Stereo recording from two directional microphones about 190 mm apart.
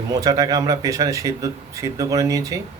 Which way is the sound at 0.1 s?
20° right (ahead or behind).